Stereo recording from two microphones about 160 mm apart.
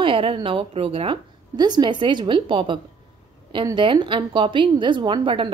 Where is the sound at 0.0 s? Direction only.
35° right (ahead or behind).